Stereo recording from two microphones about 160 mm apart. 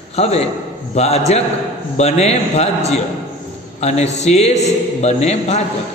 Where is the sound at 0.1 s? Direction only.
40° left (ahead or behind).